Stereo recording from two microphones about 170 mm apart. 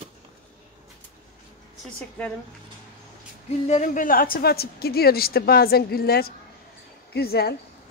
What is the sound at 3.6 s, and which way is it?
A woman's voice, 45° left (ahead or behind).